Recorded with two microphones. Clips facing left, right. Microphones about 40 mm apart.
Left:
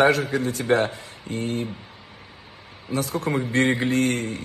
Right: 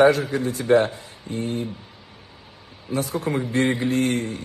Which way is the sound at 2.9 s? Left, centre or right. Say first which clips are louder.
Even; left.